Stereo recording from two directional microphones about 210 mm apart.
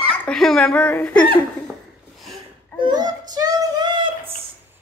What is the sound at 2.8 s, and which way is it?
Child singing, 20° right (ahead or behind).